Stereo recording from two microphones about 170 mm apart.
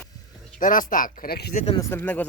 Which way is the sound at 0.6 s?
55° left (ahead or behind).